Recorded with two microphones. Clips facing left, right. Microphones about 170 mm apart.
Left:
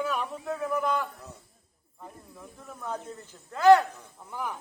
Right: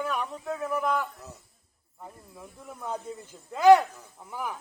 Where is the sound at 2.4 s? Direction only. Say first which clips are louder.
Right 1 dB; 15° right (ahead or behind).